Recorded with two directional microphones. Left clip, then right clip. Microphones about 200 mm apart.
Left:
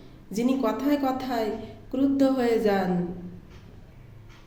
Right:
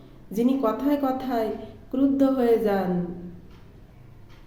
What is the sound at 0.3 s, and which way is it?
A woman's voice, 15° right (ahead or behind).